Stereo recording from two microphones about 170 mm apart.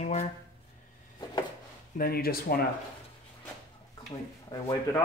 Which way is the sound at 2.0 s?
60° left (ahead or behind).